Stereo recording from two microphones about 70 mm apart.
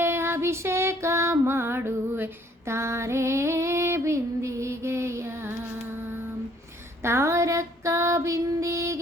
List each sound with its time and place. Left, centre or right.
0.0 s music: right
7.0 s female singing: right